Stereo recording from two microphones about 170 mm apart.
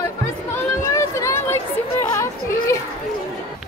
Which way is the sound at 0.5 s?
15° left (ahead or behind).